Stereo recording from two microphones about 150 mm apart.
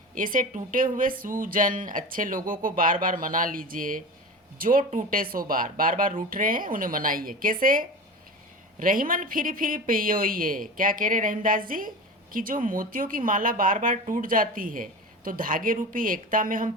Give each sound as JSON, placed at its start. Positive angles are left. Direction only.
{"t": 0.1, "sound": "speech", "side_deg": -65}